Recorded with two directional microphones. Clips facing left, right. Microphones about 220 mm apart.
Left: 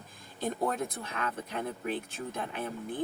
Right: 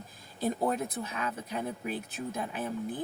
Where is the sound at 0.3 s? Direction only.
5° right (ahead or behind).